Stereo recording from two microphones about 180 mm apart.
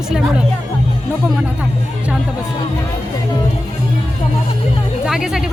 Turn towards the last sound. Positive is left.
turn(degrees=0)  # may be behind; listen again after turning